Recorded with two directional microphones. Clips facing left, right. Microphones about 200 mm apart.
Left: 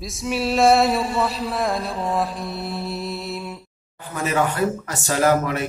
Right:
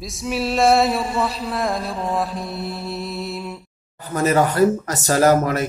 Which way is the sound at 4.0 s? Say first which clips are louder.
Right 4 dB; 40° right (ahead or behind).